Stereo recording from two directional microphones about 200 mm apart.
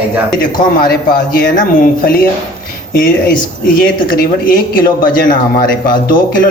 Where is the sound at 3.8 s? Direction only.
45° left (ahead or behind).